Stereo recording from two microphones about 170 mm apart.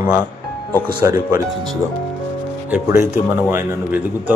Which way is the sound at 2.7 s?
15° right (ahead or behind).